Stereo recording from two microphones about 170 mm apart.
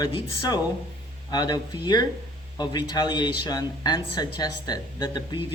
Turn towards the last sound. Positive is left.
turn(degrees=25)  # may be behind; listen again after turning